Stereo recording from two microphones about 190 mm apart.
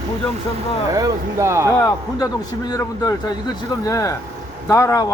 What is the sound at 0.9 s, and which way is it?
Speech, 20° right (ahead or behind).